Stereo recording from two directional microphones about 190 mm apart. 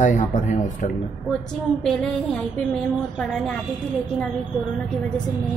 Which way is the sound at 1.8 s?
5° left (ahead or behind).